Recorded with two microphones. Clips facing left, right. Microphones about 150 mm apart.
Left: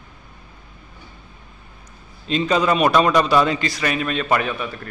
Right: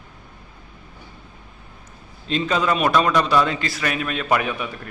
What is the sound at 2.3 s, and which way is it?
A man's voice, centre (ahead or behind).